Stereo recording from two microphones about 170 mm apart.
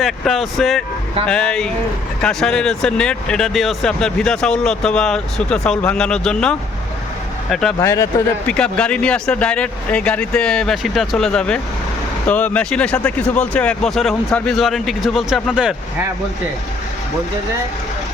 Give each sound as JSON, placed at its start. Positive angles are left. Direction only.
{"t": 0.0, "sound": "speech", "side_deg": 0}
{"t": 7.8, "sound": "speech", "side_deg": 15}
{"t": 8.4, "sound": "speech", "side_deg": 5}